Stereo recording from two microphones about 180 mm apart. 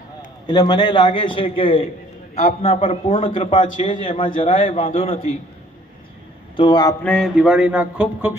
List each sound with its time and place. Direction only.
0.5 s a man's voice: 25° left (ahead or behind)
6.5 s a man's voice: 25° left (ahead or behind)
7.0 s speech: 5° left (ahead or behind)